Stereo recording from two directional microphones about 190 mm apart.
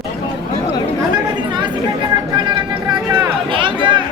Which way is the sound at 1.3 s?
25° right (ahead or behind).